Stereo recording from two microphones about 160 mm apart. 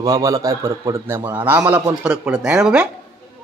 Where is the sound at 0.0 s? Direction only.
20° right (ahead or behind); by 2.6 s 5° right (ahead or behind).